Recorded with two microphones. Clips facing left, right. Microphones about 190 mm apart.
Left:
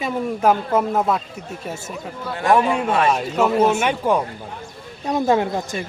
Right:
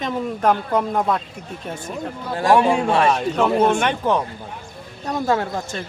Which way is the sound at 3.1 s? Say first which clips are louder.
Even; 5° left (ahead or behind).